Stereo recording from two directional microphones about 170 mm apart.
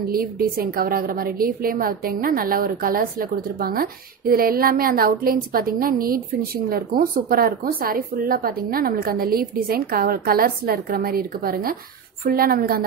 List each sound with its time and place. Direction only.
0.1 s a woman's voice: 60° right (ahead or behind)